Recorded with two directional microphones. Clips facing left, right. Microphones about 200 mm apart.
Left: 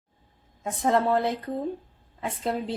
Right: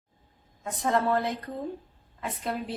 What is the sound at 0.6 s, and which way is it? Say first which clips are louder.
Speech: left 3 dB; 30° left (ahead or behind).